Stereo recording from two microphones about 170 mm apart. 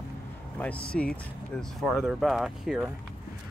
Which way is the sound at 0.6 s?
10° left (ahead or behind).